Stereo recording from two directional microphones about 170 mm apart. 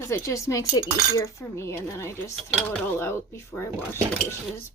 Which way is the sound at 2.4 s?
Centre (ahead or behind).